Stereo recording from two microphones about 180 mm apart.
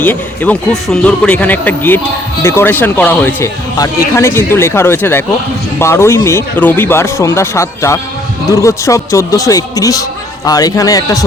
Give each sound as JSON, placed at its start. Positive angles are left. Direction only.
{"t": 0.0, "sound": "a man's voice", "side_deg": 10}